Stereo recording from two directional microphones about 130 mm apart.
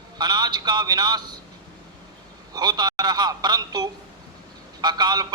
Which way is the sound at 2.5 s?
30° right (ahead or behind).